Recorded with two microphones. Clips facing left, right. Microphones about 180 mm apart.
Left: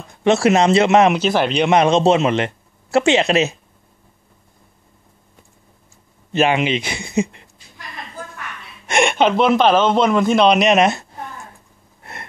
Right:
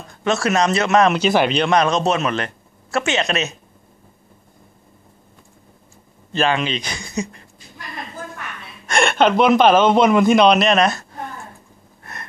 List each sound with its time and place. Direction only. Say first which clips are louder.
0.3 s speech: left 5 dB; 25° left (ahead or behind)
1.2 s a man's voice: right 1 dB; 5° right (ahead or behind)
1.7 s speech: left 4 dB; 25° left (ahead or behind)
6.3 s speech: left 3 dB; 20° left (ahead or behind)
8.8 s a sound: left 2 dB; 20° left (ahead or behind)
9.2 s a man's voice: right 2 dB; centre (ahead or behind)
10.6 s speech: left 2 dB; 20° left (ahead or behind)
12.0 s gasp: left 1 dB; 25° left (ahead or behind)